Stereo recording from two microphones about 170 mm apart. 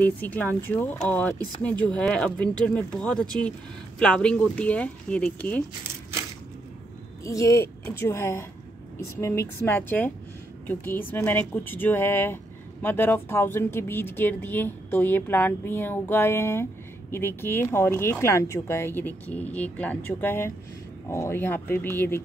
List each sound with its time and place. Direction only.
0.0 s speech: 10° left (ahead or behind)
7.2 s speech: 20° left (ahead or behind)